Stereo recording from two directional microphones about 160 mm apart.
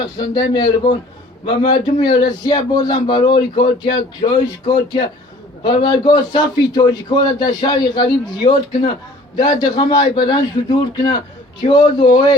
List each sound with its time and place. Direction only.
0.0 s a man's voice: 25° left (ahead or behind)
9.4 s a man's voice: 25° left (ahead or behind)